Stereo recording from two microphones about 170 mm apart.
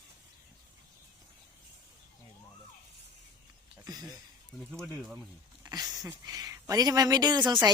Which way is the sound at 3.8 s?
25° right (ahead or behind).